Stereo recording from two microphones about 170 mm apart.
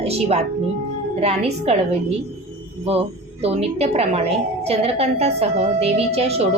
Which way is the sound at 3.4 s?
35° right (ahead or behind).